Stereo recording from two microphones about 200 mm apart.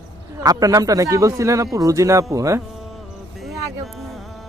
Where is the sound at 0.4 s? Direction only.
15° right (ahead or behind).